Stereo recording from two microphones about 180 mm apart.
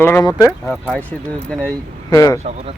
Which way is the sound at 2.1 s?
20° left (ahead or behind).